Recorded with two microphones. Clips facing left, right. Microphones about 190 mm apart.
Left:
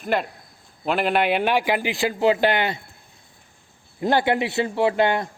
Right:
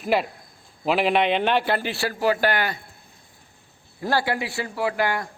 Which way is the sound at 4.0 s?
20° left (ahead or behind).